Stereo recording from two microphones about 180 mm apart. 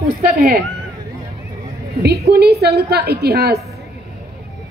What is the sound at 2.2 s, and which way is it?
A woman's voice, 60° right (ahead or behind).